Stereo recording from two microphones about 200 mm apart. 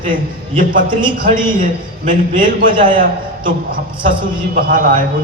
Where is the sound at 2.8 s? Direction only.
40° right (ahead or behind).